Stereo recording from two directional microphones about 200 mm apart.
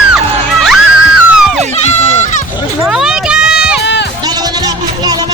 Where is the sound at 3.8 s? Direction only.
60° left (ahead or behind).